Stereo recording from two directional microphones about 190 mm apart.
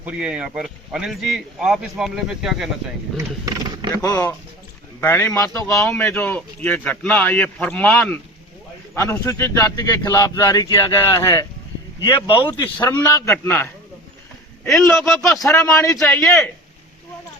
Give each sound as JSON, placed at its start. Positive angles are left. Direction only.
{"t": 0.0, "sound": "speech", "side_deg": -5}
{"t": 3.4, "sound": "a sound", "side_deg": -20}
{"t": 4.0, "sound": "a man's voice", "side_deg": 15}
{"t": 5.6, "sound": "a man's voice", "side_deg": 0}
{"t": 15.2, "sound": "a man's voice", "side_deg": 15}
{"t": 16.0, "sound": "speech", "side_deg": 5}